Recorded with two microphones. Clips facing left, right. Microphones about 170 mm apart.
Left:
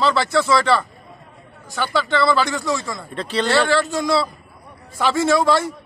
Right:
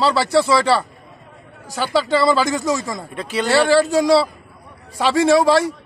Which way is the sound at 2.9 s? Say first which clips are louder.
Even; 10° right (ahead or behind).